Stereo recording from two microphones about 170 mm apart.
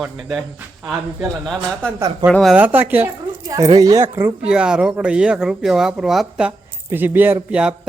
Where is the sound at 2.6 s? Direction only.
10° right (ahead or behind).